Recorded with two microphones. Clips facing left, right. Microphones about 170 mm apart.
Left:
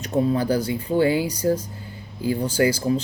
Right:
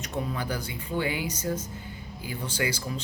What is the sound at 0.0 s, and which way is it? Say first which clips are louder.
A man's voice: left 11 dB; 30° left (ahead or behind).